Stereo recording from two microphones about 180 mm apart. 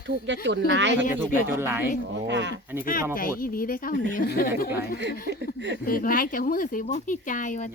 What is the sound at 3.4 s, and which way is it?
Speech, 50° left (ahead or behind).